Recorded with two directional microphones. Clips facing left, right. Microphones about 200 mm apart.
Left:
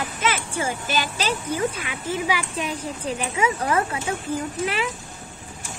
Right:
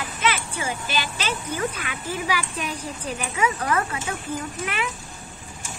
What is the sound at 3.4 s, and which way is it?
Speech, 25° left (ahead or behind).